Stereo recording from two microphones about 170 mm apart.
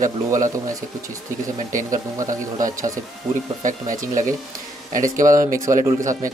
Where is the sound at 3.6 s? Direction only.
50° right (ahead or behind).